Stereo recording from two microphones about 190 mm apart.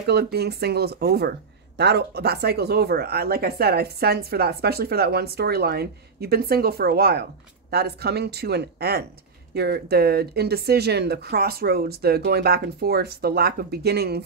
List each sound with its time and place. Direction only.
0.0 s speech: 60° right (ahead or behind)